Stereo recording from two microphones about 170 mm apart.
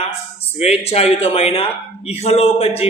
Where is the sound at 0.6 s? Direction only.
40° left (ahead or behind).